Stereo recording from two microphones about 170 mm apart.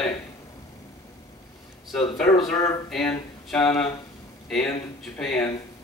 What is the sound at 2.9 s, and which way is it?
Speech, 5° left (ahead or behind).